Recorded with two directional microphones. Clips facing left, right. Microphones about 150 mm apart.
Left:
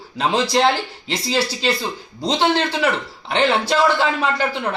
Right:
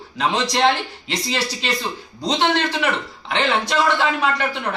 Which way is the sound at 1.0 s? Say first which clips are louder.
Left 3 dB; 30° left (ahead or behind).